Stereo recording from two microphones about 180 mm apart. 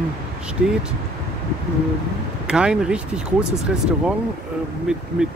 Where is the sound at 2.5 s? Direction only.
5° right (ahead or behind).